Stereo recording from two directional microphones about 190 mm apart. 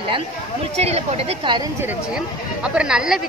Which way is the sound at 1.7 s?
10° right (ahead or behind).